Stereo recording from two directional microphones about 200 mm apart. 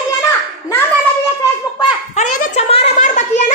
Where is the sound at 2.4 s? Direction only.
35° left (ahead or behind).